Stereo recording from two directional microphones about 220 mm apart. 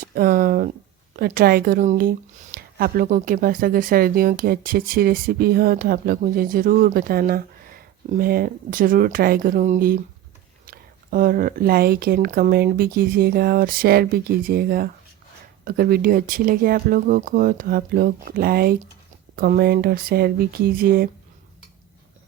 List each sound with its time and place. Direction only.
0.0 s speech: 40° right (ahead or behind)